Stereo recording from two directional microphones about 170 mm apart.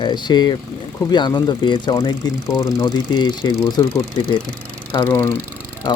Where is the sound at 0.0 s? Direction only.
25° left (ahead or behind).